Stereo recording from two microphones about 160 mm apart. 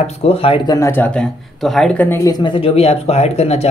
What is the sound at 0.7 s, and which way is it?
Speech, 15° left (ahead or behind).